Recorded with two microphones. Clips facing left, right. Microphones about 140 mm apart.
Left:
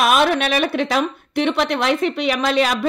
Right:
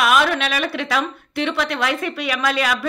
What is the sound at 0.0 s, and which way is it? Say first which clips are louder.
A woman's voice: left 2 dB; 25° left (ahead or behind).